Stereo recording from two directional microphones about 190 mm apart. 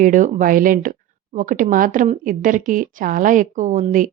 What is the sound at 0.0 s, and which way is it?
Speech, 45° right (ahead or behind).